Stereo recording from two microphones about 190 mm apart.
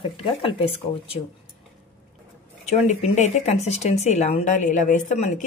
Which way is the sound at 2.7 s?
35° left (ahead or behind).